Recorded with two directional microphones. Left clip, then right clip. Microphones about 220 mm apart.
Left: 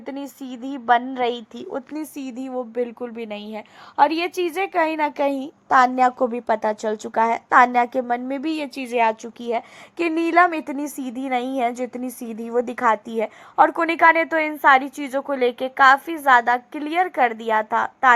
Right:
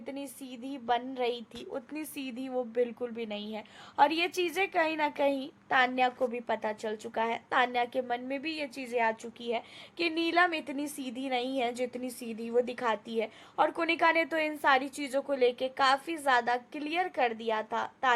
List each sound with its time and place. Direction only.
0.0 s a woman's voice: 20° left (ahead or behind)
10.1 s a woman's voice: 20° left (ahead or behind)